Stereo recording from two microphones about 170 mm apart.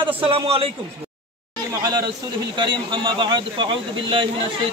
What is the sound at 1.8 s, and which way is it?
A man's voice, 20° right (ahead or behind).